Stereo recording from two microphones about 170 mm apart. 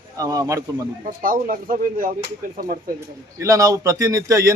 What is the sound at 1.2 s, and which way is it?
Speech, 55° right (ahead or behind).